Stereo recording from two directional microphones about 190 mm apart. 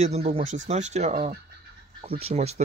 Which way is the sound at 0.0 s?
35° right (ahead or behind).